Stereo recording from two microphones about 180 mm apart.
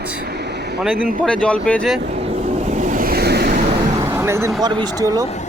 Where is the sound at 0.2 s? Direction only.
65° right (ahead or behind).